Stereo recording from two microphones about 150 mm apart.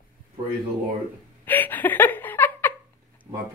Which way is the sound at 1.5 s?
15° left (ahead or behind).